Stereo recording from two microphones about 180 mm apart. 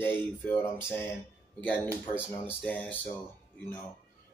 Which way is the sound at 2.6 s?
5° left (ahead or behind).